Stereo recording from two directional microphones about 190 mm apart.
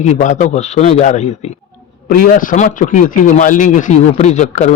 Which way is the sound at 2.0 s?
50° left (ahead or behind).